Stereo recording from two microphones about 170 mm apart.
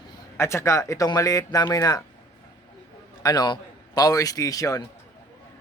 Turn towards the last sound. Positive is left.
turn(degrees=20)  # may be behind; listen again after turning